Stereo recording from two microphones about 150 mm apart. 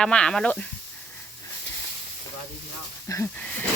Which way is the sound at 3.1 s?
15° left (ahead or behind).